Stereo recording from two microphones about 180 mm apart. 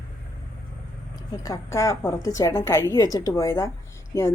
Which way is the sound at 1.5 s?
15° left (ahead or behind).